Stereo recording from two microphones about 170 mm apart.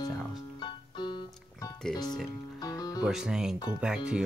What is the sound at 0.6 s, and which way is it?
Music, 25° left (ahead or behind).